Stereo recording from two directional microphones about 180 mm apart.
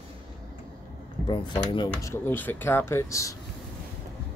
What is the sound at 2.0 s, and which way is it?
Speech, 10° left (ahead or behind).